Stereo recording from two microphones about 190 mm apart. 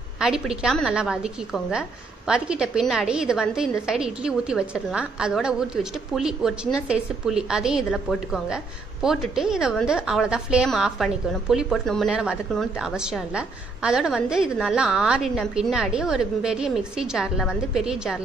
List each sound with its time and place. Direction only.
0.2 s a woman's voice: 5° right (ahead or behind)